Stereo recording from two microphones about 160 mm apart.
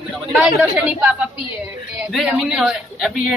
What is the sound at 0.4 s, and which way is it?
A woman's voice, 10° right (ahead or behind).